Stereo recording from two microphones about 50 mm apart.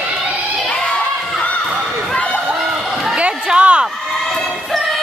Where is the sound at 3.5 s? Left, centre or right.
Right.